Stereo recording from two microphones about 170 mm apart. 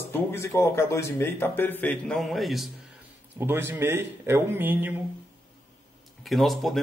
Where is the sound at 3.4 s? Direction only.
15° right (ahead or behind).